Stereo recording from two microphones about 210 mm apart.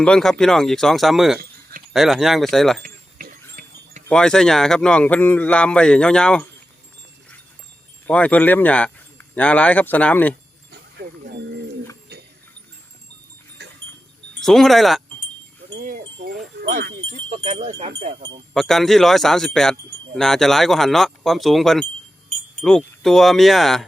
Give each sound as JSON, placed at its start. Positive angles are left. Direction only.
{"t": 0.0, "sound": "speech", "side_deg": 5}
{"t": 2.8, "sound": "a sound", "side_deg": -45}
{"t": 4.1, "sound": "speech", "side_deg": 5}
{"t": 8.0, "sound": "speech", "side_deg": 5}
{"t": 10.7, "sound": "a sound", "side_deg": -50}
{"t": 13.6, "sound": "goat", "side_deg": -55}
{"t": 14.3, "sound": "speech", "side_deg": 0}
{"t": 15.7, "sound": "livestock", "side_deg": -50}
{"t": 16.6, "sound": "speech", "side_deg": -45}
{"t": 17.1, "sound": "speech", "side_deg": -30}
{"t": 18.5, "sound": "speech", "side_deg": 0}